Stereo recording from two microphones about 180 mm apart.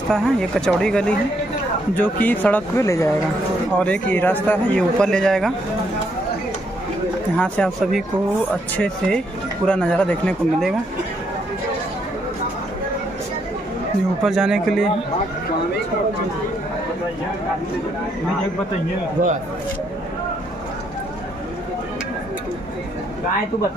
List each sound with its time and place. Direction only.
0.1 s a man's voice: 5° left (ahead or behind)
7.3 s speech: 5° left (ahead or behind)
14.2 s speech: 5° right (ahead or behind)
19.2 s speech: 45° right (ahead or behind)